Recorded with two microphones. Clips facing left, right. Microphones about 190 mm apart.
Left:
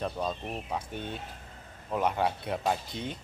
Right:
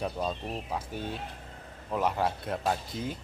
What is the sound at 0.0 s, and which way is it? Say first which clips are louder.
Speech: even; 5° right (ahead or behind).